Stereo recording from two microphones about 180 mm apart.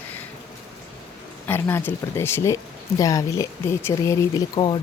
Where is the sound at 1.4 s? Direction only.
10° left (ahead or behind).